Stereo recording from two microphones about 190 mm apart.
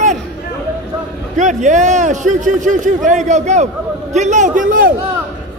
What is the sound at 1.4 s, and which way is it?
A man's voice, 40° right (ahead or behind).